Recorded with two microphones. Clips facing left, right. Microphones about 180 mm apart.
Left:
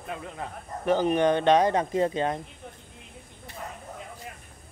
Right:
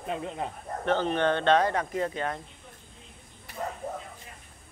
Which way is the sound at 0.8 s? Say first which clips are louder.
Left 3 dB; 10° left (ahead or behind).